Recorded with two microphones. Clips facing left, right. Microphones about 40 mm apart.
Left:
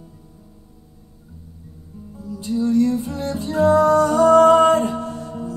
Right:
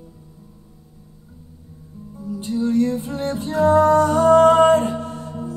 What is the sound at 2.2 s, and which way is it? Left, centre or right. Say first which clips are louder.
Music: left 1 dB; right.